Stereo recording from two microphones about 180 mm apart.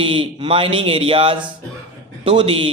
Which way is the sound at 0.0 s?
30° right (ahead or behind).